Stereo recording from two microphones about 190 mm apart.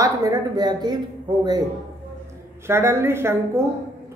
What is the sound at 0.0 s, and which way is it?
Speech, 15° right (ahead or behind).